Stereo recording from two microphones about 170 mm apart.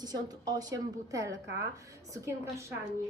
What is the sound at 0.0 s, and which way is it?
A woman's voice, 25° right (ahead or behind).